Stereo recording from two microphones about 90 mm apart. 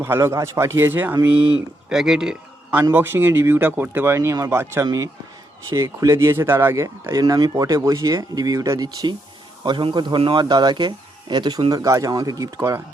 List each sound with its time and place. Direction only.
0.0 s speech: 30° right (ahead or behind)
1.9 s speech: 5° right (ahead or behind)
2.9 s speech: 25° right (ahead or behind)
7.2 s speech: 45° right (ahead or behind)
9.6 s speech: 60° right (ahead or behind)
11.7 s speech: 35° right (ahead or behind)